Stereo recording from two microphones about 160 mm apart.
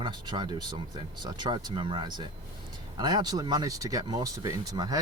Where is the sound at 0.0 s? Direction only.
30° right (ahead or behind).